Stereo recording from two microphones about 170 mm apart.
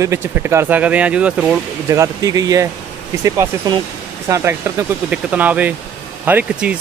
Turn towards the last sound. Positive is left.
turn(degrees=-10)  # may be behind; listen again after turning